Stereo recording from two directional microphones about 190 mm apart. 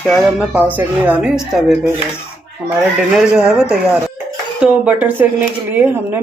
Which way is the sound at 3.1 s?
5° right (ahead or behind).